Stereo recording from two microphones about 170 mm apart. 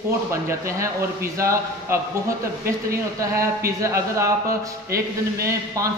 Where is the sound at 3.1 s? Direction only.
20° right (ahead or behind).